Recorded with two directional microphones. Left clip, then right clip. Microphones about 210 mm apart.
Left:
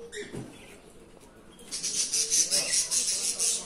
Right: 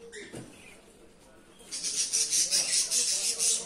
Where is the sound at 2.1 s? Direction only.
20° right (ahead or behind).